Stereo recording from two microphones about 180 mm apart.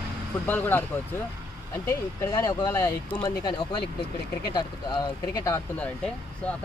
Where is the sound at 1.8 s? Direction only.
15° left (ahead or behind).